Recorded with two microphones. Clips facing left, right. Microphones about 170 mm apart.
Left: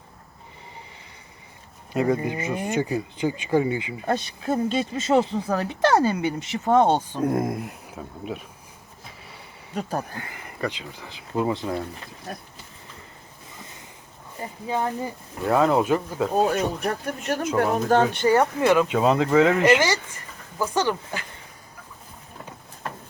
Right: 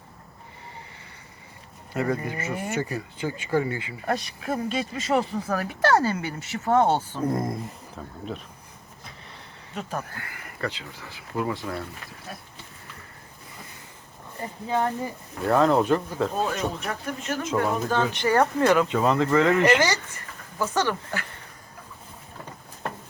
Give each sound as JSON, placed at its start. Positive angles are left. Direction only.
{"t": 1.9, "sound": "speech", "side_deg": 15}
{"t": 7.2, "sound": "speech", "side_deg": 5}
{"t": 10.0, "sound": "speech", "side_deg": 20}
{"t": 15.4, "sound": "speech", "side_deg": 5}
{"t": 16.3, "sound": "speech", "side_deg": 50}
{"t": 17.6, "sound": "speech", "side_deg": 60}
{"t": 18.3, "sound": "speech", "side_deg": 15}